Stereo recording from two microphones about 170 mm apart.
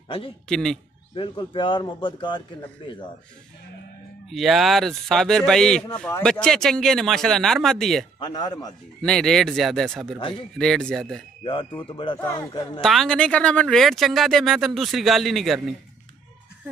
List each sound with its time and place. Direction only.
0.5 s speech: 5° left (ahead or behind)
1.1 s speech: 30° left (ahead or behind)
4.3 s speech: centre (ahead or behind)
8.2 s speech: 25° left (ahead or behind)
9.0 s speech: 5° left (ahead or behind)
11.4 s speech: 30° left (ahead or behind)
12.8 s speech: centre (ahead or behind)